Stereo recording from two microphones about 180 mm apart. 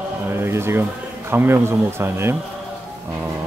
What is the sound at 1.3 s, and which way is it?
Speech, 10° right (ahead or behind).